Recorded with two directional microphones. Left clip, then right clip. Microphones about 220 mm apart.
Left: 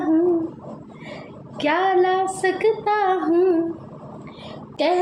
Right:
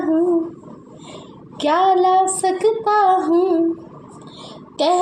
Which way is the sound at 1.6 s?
35° right (ahead or behind).